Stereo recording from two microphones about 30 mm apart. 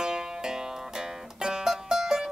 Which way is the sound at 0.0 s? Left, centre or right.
Right.